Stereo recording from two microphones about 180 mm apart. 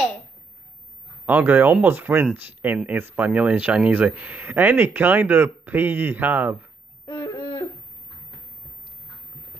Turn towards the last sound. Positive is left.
turn(degrees=20)  # may be behind; listen again after turning